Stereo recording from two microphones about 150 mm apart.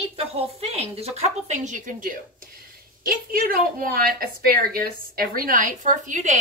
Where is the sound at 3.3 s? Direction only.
75° right (ahead or behind).